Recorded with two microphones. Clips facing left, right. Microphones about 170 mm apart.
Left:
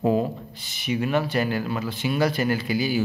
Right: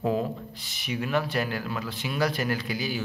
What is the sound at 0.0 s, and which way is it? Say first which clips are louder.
A man's voice: left 5 dB; centre (ahead or behind).